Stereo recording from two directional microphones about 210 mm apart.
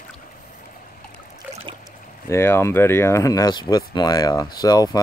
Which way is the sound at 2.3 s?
10° left (ahead or behind).